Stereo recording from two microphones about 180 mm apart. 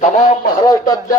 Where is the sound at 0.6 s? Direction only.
20° left (ahead or behind).